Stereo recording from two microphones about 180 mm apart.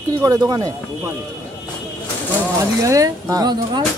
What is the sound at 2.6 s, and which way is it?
Speech, 20° right (ahead or behind).